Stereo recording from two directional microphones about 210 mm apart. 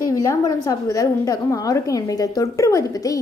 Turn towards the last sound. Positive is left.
turn(degrees=15)  # may be behind; listen again after turning